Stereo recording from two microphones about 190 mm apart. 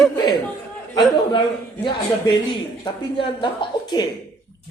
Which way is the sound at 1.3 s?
25° left (ahead or behind).